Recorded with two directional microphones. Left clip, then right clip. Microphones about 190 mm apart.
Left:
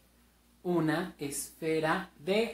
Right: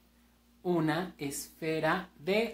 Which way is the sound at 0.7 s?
25° right (ahead or behind).